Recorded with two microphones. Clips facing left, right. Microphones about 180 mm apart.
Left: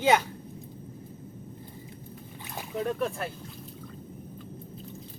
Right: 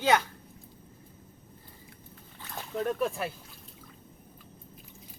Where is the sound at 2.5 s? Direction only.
10° left (ahead or behind).